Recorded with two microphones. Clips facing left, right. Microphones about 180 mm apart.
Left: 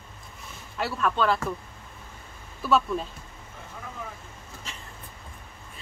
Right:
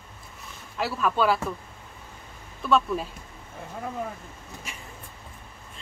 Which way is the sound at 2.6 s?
Centre (ahead or behind).